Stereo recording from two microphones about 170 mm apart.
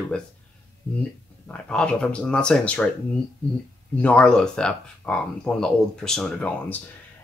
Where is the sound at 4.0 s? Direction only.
5° left (ahead or behind).